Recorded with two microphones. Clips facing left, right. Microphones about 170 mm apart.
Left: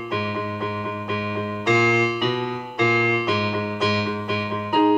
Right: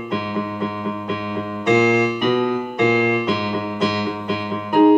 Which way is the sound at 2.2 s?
55° right (ahead or behind).